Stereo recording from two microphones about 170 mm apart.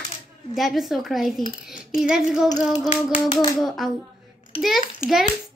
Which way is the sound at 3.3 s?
25° left (ahead or behind).